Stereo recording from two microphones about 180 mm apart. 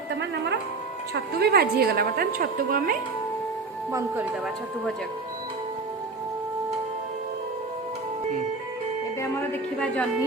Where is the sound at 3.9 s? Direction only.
15° right (ahead or behind).